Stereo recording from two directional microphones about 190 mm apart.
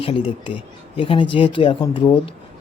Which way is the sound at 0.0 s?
30° left (ahead or behind).